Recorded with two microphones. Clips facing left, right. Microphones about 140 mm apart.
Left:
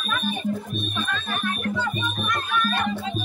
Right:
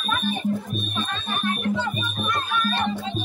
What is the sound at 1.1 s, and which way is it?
Music, 25° right (ahead or behind).